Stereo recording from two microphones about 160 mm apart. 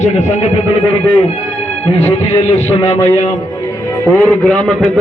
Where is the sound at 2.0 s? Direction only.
45° left (ahead or behind).